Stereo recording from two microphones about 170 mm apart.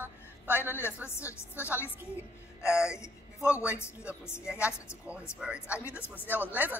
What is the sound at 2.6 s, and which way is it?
Speech, 5° right (ahead or behind).